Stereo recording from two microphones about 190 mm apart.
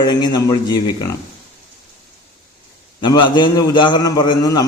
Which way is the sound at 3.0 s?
25° left (ahead or behind).